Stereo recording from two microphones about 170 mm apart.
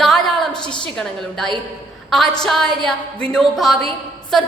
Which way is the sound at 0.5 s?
25° left (ahead or behind).